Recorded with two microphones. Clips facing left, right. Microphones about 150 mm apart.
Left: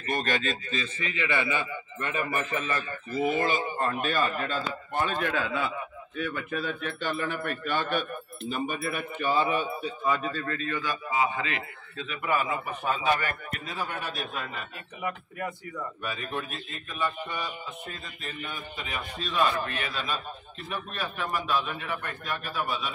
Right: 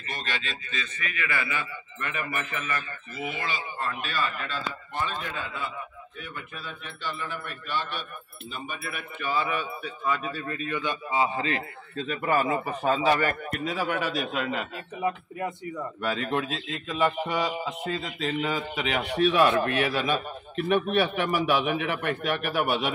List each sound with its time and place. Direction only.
0.1 s a man's voice: 45° left (ahead or behind)
5.0 s a man's voice: 70° left (ahead or behind)
6.1 s a man's voice: 65° left (ahead or behind); by 9.0 s 45° left (ahead or behind)
9.2 s a man's voice: 30° left (ahead or behind)
10.0 s speech: centre (ahead or behind)
10.3 s a man's voice: 15° right (ahead or behind); by 13.4 s 35° right (ahead or behind)
13.7 s speech: 90° right
15.0 s speech: 25° right (ahead or behind)
16.0 s a man's voice: 90° right